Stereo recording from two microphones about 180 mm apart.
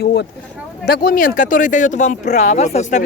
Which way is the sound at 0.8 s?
55° left (ahead or behind).